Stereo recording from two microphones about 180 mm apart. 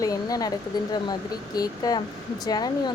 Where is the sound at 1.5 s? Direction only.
20° left (ahead or behind).